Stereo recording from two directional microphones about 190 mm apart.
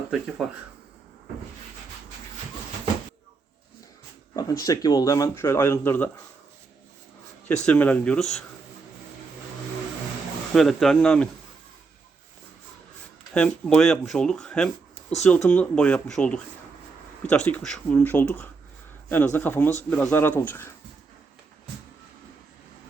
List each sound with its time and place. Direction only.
0.4 s speech: centre (ahead or behind)
4.4 s speech: 20° left (ahead or behind)
7.4 s speech: 5° left (ahead or behind)
10.5 s speech: centre (ahead or behind)
13.3 s speech: 5° left (ahead or behind)